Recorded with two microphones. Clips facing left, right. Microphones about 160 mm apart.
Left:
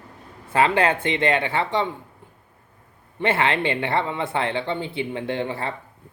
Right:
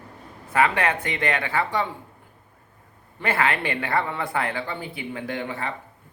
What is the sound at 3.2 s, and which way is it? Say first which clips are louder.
Speech: left 3 dB; 25° left (ahead or behind).